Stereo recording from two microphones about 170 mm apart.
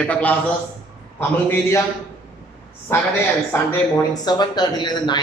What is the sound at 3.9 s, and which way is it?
A woman's voice, 25° left (ahead or behind).